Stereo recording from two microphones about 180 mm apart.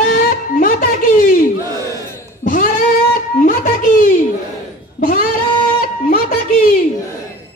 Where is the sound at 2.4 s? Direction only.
45° left (ahead or behind).